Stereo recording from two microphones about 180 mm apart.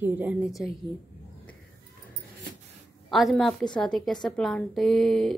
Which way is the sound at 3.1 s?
Centre (ahead or behind).